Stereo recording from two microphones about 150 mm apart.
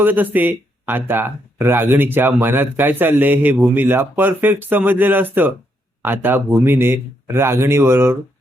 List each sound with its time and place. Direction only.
0.0 s speech: 10° right (ahead or behind)